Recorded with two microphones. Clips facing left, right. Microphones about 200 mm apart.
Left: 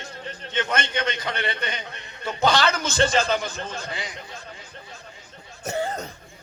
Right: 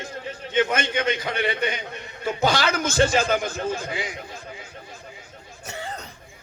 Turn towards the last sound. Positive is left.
turn(degrees=45)  # may be behind; listen again after turning